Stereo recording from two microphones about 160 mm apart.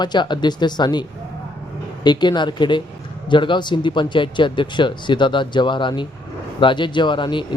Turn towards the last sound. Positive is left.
turn(degrees=30)  # may be behind; listen again after turning